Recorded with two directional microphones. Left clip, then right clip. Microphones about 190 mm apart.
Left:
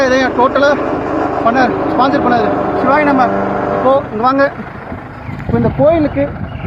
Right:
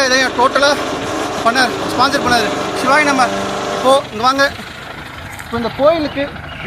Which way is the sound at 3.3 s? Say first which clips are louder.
Left 4 dB; 15° left (ahead or behind).